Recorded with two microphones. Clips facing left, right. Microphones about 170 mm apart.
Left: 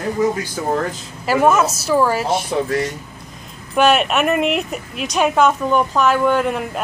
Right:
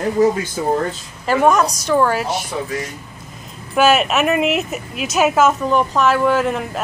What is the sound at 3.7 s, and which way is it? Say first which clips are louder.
Speech: even; 5° right (ahead or behind).